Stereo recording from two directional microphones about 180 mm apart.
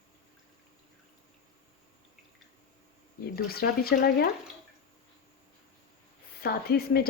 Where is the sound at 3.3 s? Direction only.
55° left (ahead or behind).